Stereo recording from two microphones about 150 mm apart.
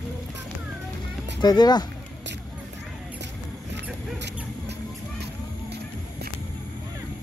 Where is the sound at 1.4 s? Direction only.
30° left (ahead or behind).